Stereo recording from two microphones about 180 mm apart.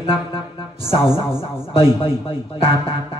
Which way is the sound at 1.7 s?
30° left (ahead or behind).